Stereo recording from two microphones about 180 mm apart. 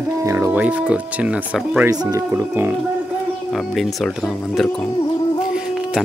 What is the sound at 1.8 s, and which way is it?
Speech, 20° right (ahead or behind).